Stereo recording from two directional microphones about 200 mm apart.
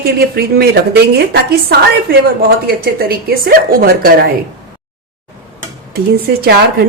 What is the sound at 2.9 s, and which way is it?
A woman's voice, 50° right (ahead or behind).